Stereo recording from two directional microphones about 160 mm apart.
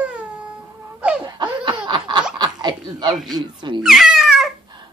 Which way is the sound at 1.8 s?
30° right (ahead or behind).